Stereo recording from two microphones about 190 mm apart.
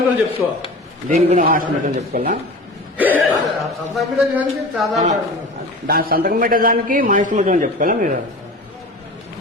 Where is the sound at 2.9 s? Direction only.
10° right (ahead or behind).